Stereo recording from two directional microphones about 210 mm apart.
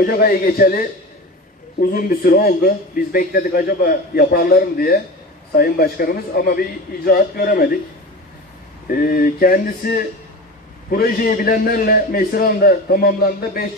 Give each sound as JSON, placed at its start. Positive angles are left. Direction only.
{"t": 0.0, "sound": "a man's voice", "side_deg": 45}
{"t": 8.8, "sound": "a man's voice", "side_deg": 45}